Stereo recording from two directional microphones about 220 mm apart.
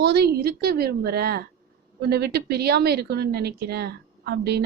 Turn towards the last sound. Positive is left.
turn(degrees=-45)  # may be behind; listen again after turning